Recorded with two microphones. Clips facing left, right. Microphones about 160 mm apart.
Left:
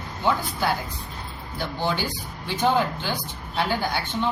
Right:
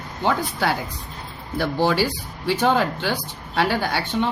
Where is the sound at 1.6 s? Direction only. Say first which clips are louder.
Right 7 dB; 65° right (ahead or behind).